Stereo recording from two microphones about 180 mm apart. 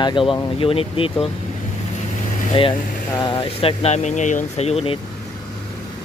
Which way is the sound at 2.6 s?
30° left (ahead or behind).